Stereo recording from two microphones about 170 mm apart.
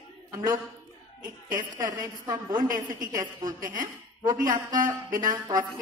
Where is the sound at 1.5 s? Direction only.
25° right (ahead or behind).